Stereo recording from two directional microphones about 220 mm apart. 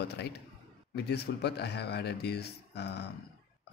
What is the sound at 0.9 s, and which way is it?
Speech, 45° left (ahead or behind).